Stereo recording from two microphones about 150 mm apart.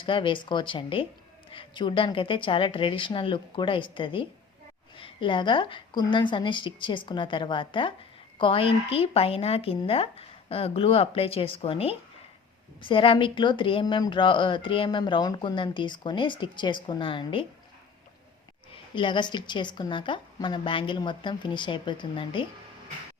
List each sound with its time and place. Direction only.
0.0 s speech: 35° left (ahead or behind)
18.7 s speech: 35° left (ahead or behind)